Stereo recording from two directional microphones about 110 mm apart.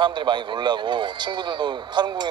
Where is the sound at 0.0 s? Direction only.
45° right (ahead or behind).